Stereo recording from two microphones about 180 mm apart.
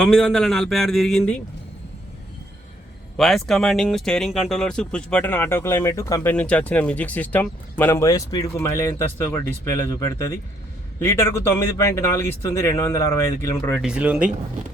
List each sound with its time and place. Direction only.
0.0 s a man's voice: 5° left (ahead or behind)
3.2 s speech: centre (ahead or behind)
13.8 s speech: 5° right (ahead or behind)